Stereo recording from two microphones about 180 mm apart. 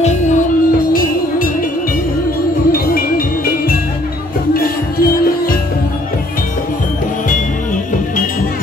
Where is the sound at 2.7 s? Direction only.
55° left (ahead or behind).